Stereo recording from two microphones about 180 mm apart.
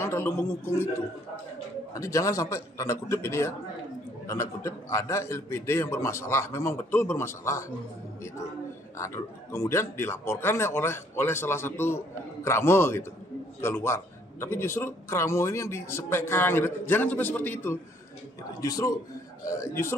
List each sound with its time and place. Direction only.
0.0 s a man's voice: 15° left (ahead or behind)
2.0 s a man's voice: 15° left (ahead or behind)
8.9 s a man's voice: 15° left (ahead or behind)